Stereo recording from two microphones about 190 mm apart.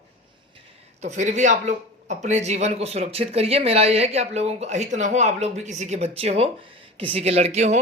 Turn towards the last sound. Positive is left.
turn(degrees=-35)  # may be behind; listen again after turning